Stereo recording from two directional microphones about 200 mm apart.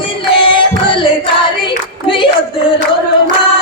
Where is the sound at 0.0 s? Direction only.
25° left (ahead or behind).